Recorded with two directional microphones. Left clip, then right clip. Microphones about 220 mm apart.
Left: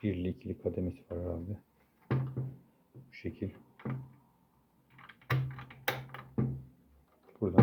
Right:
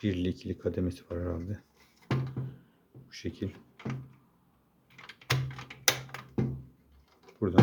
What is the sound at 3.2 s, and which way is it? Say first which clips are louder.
Speech: right 3 dB; 10° right (ahead or behind).